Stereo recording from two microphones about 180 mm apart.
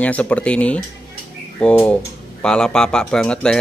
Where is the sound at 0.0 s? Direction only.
5° left (ahead or behind).